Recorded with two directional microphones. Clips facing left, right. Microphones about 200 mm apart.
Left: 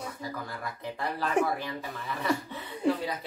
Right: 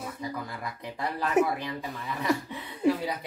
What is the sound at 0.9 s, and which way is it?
Speech, 5° right (ahead or behind).